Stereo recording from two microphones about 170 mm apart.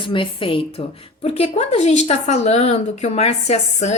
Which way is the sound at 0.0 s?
30° left (ahead or behind).